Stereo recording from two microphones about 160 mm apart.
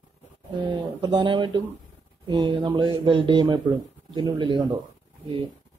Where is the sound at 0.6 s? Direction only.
30° right (ahead or behind).